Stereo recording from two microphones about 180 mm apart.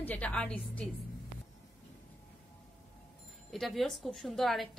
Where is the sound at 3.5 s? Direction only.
Centre (ahead or behind).